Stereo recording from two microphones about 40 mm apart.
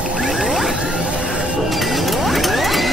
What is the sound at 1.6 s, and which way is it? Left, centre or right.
Mechanisms, centre.